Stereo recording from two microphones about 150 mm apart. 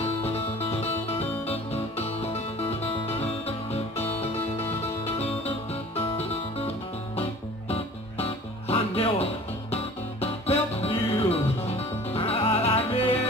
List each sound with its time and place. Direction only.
0.0 s music: 45° left (ahead or behind)
7.7 s music: 40° left (ahead or behind)